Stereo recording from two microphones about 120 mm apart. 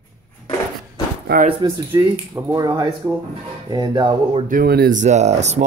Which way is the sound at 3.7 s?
40° right (ahead or behind).